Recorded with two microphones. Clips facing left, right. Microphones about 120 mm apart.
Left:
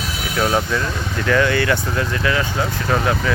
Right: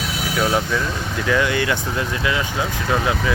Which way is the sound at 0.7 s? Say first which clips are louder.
Left 1 dB; 10° right (ahead or behind).